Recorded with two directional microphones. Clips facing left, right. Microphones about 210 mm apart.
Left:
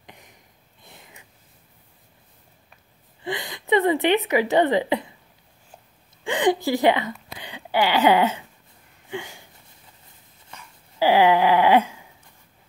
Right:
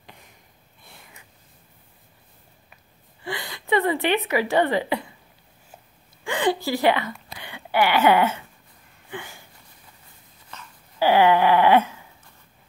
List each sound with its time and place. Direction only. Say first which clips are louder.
0.0 s sniff: left 1 dB; 15° left (ahead or behind)
0.8 s a sound: left 1 dB; 20° left (ahead or behind)
3.2 s a woman's voice: left 3 dB; 20° left (ahead or behind)
6.2 s a sound: left 2 dB; 20° left (ahead or behind)
9.1 s sniff: left 4 dB; 15° left (ahead or behind)
10.5 s dog: right 2 dB; 15° left (ahead or behind)